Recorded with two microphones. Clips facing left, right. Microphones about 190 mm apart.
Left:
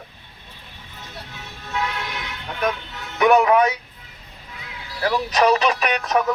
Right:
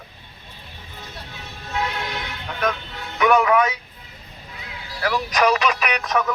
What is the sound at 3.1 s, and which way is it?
Speech, 35° left (ahead or behind).